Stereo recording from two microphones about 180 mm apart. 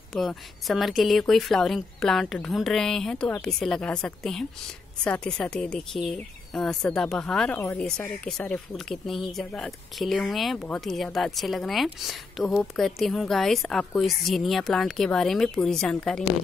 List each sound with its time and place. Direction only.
0.1 s speech: centre (ahead or behind)
7.5 s speech: 15° left (ahead or behind)
7.8 s speech: 5° left (ahead or behind)